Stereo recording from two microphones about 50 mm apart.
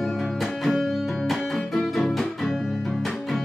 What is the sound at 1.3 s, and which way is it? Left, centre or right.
Music, centre.